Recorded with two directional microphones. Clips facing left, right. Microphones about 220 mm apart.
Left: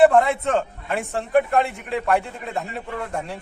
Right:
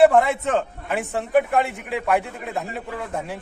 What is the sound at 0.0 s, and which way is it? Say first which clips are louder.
A man's voice: even; 5° right (ahead or behind).